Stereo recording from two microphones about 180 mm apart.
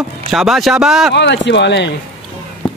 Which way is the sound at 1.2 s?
75° left (ahead or behind).